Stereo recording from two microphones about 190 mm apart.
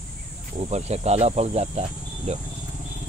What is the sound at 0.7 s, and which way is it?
Speech, 35° right (ahead or behind).